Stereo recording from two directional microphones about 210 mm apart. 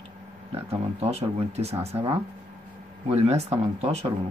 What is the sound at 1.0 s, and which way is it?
Speech, 30° right (ahead or behind).